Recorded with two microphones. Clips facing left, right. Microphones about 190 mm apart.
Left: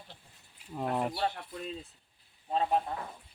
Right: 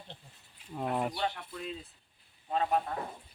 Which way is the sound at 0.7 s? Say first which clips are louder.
Left 1 dB; centre (ahead or behind).